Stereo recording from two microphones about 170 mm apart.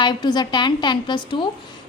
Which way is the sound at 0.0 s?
25° left (ahead or behind).